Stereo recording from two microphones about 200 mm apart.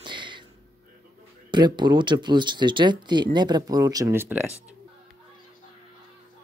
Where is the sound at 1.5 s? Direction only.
20° right (ahead or behind).